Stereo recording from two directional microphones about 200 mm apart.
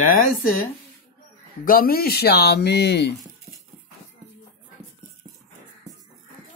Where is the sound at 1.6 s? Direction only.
45° left (ahead or behind).